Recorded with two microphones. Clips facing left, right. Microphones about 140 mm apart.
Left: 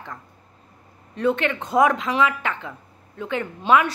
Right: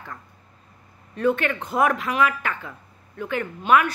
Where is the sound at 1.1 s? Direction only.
20° left (ahead or behind).